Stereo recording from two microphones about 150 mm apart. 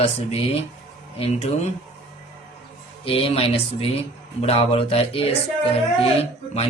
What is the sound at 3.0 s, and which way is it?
Speech, 40° left (ahead or behind).